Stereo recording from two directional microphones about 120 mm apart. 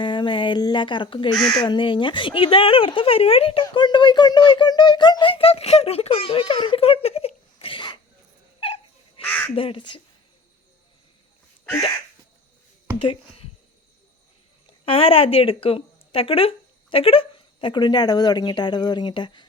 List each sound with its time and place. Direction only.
0.0 s speech: 40° left (ahead or behind)
1.3 s speech: 5° left (ahead or behind)
1.6 s speech: 40° left (ahead or behind)
8.6 s dog: 50° left (ahead or behind)
9.2 s speech: 15° left (ahead or behind)
9.6 s speech: 45° left (ahead or behind)
13.0 s speech: 50° left (ahead or behind)
14.8 s speech: 50° left (ahead or behind)